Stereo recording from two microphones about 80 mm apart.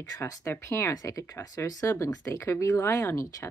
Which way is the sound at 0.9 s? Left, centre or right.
Left.